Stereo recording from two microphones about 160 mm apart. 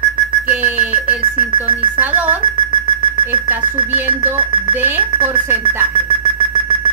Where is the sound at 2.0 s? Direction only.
10° right (ahead or behind).